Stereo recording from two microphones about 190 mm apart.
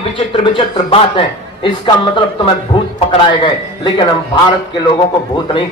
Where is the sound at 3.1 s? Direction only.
25° left (ahead or behind).